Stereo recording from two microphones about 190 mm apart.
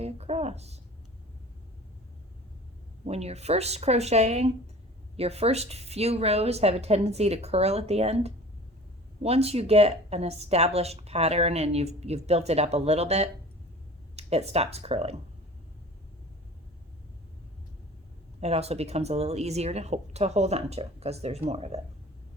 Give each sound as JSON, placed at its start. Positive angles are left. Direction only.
{"t": 0.0, "sound": "speech", "side_deg": -35}
{"t": 3.1, "sound": "speech", "side_deg": -35}
{"t": 18.3, "sound": "speech", "side_deg": -35}